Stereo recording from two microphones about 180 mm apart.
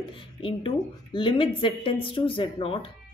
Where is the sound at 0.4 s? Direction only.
30° left (ahead or behind).